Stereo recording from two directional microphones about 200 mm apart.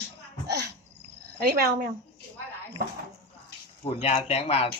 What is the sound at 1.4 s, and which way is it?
Speech, 55° right (ahead or behind).